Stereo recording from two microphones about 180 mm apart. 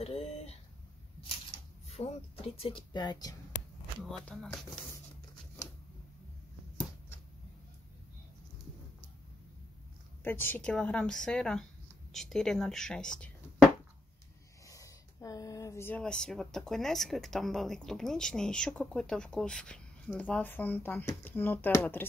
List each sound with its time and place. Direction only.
0.0 s a sound: 35° left (ahead or behind)
1.9 s speech: 35° left (ahead or behind)
4.0 s speech: centre (ahead or behind)
10.2 s speech: 10° left (ahead or behind)
14.7 s speech: 15° left (ahead or behind)